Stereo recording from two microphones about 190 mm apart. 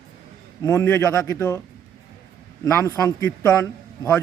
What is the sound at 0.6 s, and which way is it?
A man's voice, 15° left (ahead or behind).